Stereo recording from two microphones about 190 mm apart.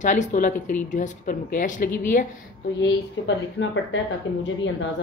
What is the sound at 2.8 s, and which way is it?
Speech, 70° left (ahead or behind).